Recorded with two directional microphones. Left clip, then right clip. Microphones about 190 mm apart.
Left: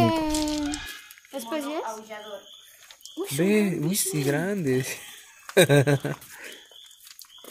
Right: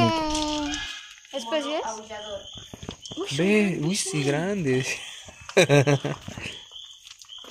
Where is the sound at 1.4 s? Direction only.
85° left.